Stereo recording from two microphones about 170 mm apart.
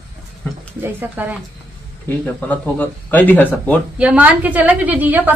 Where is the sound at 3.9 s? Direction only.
5° right (ahead or behind).